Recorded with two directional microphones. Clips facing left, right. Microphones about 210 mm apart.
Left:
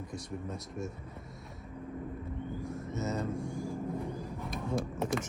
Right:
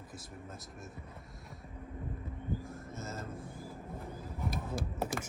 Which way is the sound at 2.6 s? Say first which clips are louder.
Left 8 dB; centre (ahead or behind).